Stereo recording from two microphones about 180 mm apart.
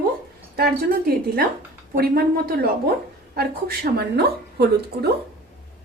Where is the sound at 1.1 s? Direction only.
55° right (ahead or behind).